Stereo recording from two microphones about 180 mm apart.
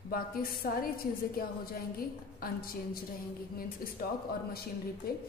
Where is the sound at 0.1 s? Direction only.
55° left (ahead or behind).